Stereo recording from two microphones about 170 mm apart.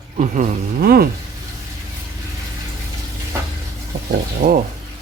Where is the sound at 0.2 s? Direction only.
45° right (ahead or behind); by 1.0 s 60° right (ahead or behind).